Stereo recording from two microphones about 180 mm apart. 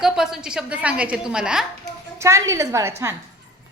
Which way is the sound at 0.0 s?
5° right (ahead or behind).